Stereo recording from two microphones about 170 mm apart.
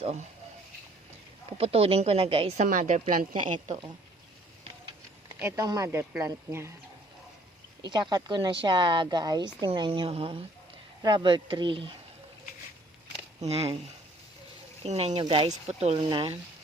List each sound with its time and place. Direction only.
1.5 s a woman's voice: 35° right (ahead or behind)
2.6 s speech: 50° right (ahead or behind)
5.4 s speech: 15° right (ahead or behind)
7.8 s a woman's voice: 25° right (ahead or behind)
13.4 s a woman's voice: 35° right (ahead or behind)
14.8 s a woman's voice: 40° right (ahead or behind)
15.2 s a woman's voice: 30° right (ahead or behind)